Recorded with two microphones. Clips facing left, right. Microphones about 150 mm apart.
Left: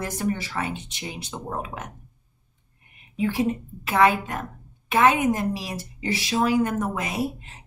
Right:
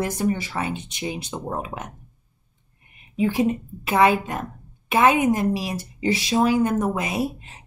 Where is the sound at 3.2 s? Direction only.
15° right (ahead or behind).